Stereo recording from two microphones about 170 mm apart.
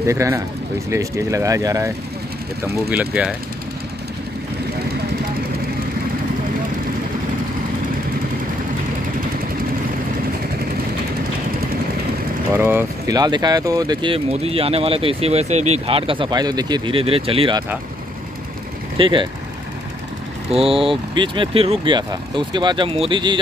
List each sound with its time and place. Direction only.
0.0 s speech: 15° right (ahead or behind)
12.5 s speech: 15° right (ahead or behind); by 17.6 s 30° right (ahead or behind)
18.9 s speech: 30° right (ahead or behind)
20.5 s speech: 35° right (ahead or behind)